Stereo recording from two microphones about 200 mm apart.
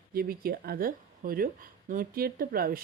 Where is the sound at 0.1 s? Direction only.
50° right (ahead or behind).